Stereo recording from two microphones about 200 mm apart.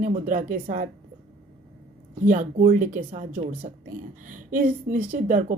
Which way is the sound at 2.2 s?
40° right (ahead or behind).